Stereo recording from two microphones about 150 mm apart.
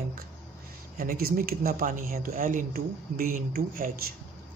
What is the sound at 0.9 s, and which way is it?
Speech, 75° right (ahead or behind).